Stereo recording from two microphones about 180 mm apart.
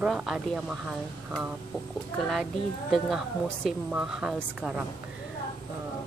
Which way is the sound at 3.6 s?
5° right (ahead or behind).